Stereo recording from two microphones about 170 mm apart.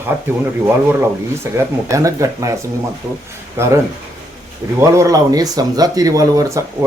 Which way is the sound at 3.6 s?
15° right (ahead or behind).